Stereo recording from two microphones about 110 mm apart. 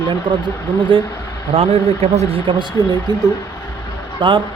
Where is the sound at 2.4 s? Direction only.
45° right (ahead or behind).